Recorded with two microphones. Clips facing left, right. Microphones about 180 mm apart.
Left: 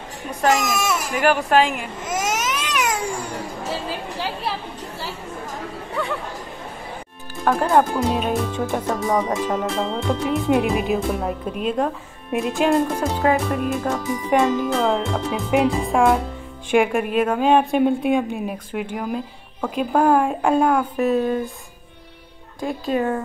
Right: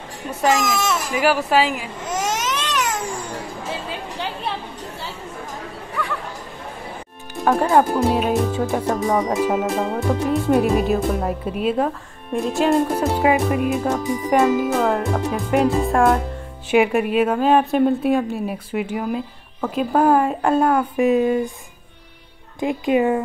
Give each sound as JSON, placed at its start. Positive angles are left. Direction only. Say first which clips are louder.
{"t": 0.3, "sound": "speech", "louder": "even", "side_deg": -5}
{"t": 0.7, "sound": "speech", "louder": "right 1 dB", "side_deg": 10}
{"t": 1.1, "sound": "a woman's voice", "louder": "left 1 dB", "side_deg": -5}
{"t": 2.0, "sound": "baby cry", "louder": "even", "side_deg": 10}
{"t": 3.9, "sound": "chatter", "louder": "left 1 dB", "side_deg": 5}
{"t": 7.4, "sound": "a woman's voice", "louder": "right 1 dB", "side_deg": 0}
{"t": 22.6, "sound": "speech", "louder": "right 4 dB", "side_deg": -15}